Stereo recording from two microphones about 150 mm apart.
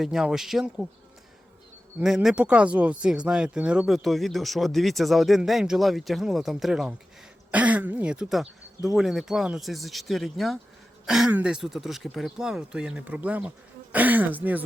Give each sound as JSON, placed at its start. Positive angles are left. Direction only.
{"t": 0.0, "sound": "speech", "side_deg": -5}
{"t": 2.0, "sound": "speech", "side_deg": -5}